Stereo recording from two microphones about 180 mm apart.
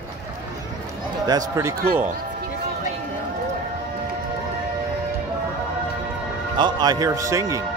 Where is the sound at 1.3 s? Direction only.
20° right (ahead or behind).